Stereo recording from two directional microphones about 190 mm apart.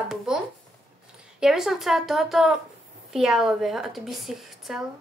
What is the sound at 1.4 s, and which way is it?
A woman's voice, centre (ahead or behind).